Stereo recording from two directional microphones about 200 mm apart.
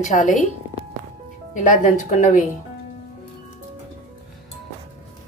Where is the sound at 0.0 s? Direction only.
40° left (ahead or behind).